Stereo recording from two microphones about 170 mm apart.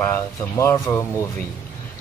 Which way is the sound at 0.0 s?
15° left (ahead or behind).